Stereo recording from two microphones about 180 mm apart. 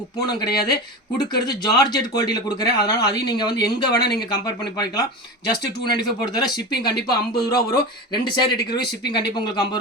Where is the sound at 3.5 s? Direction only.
65° left (ahead or behind).